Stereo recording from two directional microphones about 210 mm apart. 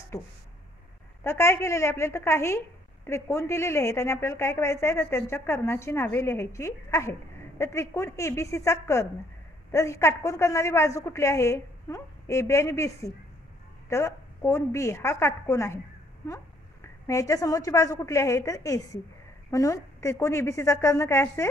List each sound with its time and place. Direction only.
1.2 s a woman's voice: 10° left (ahead or behind)
17.1 s a woman's voice: 15° left (ahead or behind)